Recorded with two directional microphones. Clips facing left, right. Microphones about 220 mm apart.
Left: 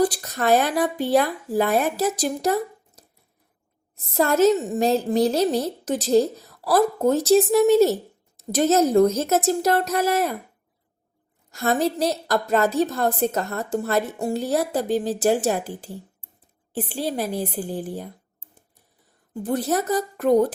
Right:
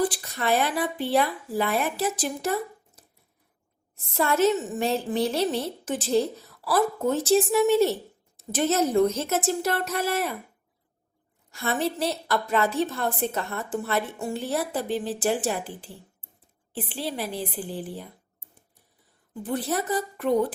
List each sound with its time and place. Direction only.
0.0 s a woman's voice: 40° left (ahead or behind)
11.5 s a woman's voice: 40° left (ahead or behind)
19.3 s a woman's voice: 45° left (ahead or behind)